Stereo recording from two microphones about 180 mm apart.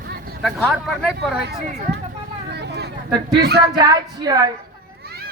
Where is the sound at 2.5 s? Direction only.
70° right (ahead or behind).